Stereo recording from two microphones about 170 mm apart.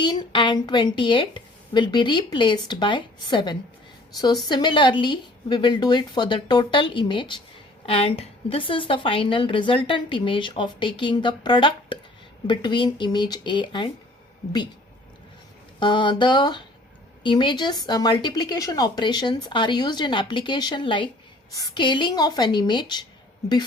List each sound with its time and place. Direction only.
0.0 s a woman's voice: 25° left (ahead or behind)
15.8 s speech: 30° left (ahead or behind)